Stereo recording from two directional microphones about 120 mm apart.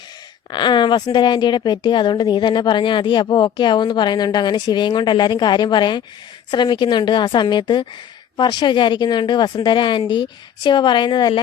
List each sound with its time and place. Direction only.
0.5 s a woman's voice: 40° left (ahead or behind)